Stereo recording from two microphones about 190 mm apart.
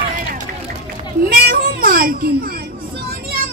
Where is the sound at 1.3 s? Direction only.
50° right (ahead or behind).